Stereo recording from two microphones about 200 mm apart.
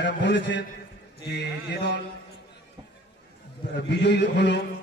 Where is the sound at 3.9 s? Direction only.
60° left (ahead or behind).